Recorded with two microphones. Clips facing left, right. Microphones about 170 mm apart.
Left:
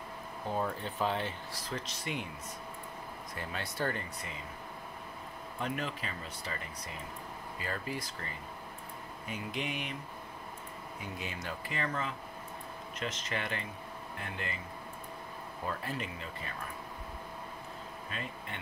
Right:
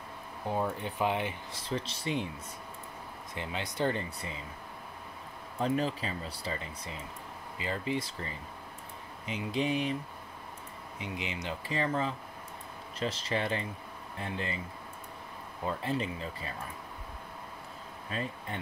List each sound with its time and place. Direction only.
0.7 s speech: 15° right (ahead or behind)
1.6 s speech: 30° right (ahead or behind)
3.3 s speech: 20° right (ahead or behind)
5.6 s speech: 35° right (ahead or behind)
7.5 s speech: 20° right (ahead or behind)
9.3 s speech: 30° right (ahead or behind)
11.0 s speech: 20° right (ahead or behind)
11.7 s speech: 30° right (ahead or behind)
15.6 s speech: 25° right (ahead or behind)